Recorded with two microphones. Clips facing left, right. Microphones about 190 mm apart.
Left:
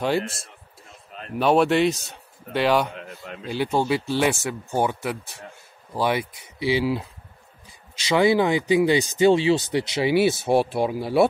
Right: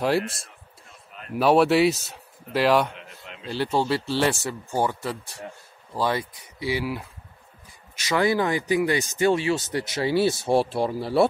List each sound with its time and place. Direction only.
0.0 s a man's voice: centre (ahead or behind)
3.4 s speech: 15° left (ahead or behind)
4.2 s a man's voice: 5° left (ahead or behind)
4.6 s speech: 20° left (ahead or behind)
8.1 s speech: 20° left (ahead or behind)